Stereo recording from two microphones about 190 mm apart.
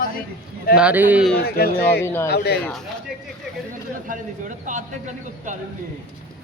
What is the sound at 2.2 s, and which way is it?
Speech, 60° left (ahead or behind).